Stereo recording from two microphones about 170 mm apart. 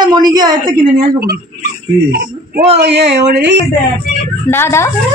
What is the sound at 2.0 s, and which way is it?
Speech, 65° right (ahead or behind).